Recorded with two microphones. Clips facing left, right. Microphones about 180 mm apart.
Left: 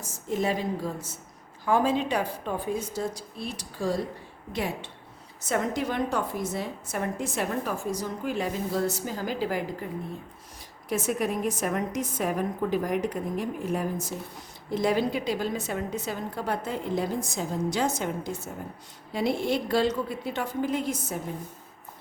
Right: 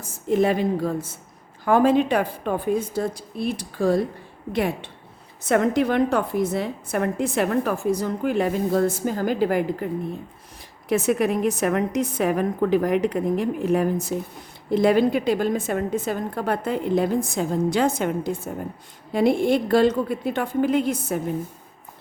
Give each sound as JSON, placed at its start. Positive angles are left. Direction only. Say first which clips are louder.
{"t": 0.0, "sound": "a woman's voice", "louder": "right 8 dB", "side_deg": -60}
{"t": 10.8, "sound": "a woman's voice", "louder": "right 7 dB", "side_deg": -70}